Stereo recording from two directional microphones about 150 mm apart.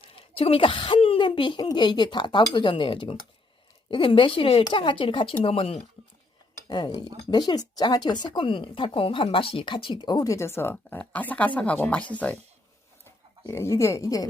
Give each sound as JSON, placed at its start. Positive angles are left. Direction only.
{"t": 0.0, "sound": "a woman's voice", "side_deg": 35}
{"t": 6.7, "sound": "speech", "side_deg": 25}